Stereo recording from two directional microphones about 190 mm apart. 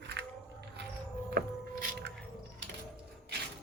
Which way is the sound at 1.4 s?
55° right (ahead or behind).